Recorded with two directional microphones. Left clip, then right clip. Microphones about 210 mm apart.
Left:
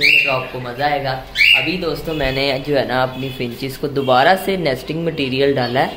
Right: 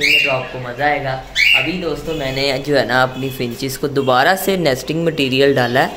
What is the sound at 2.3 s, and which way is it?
Speech, 10° left (ahead or behind).